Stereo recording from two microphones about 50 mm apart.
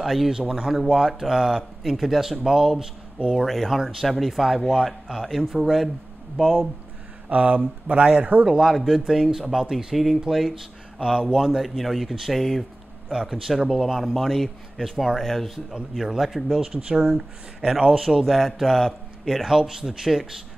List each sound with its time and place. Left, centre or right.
0.0 s a man's voice: centre
0.3 s speech: centre
0.9 s speech: centre
3.4 s speech: centre
7.2 s speech: right
8.5 s speech: centre
11.0 s speech: centre
11.3 s speech: centre
16.6 s speech: centre
18.2 s speech: centre
19.4 s speech: centre